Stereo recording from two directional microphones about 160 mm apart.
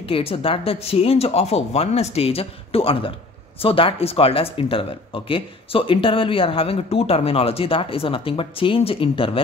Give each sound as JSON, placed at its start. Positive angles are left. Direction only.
{"t": 0.1, "sound": "speech", "side_deg": 35}